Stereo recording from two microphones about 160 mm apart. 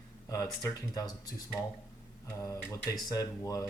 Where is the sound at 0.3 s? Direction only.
20° left (ahead or behind).